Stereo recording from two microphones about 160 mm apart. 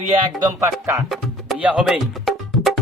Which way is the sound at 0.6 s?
20° right (ahead or behind).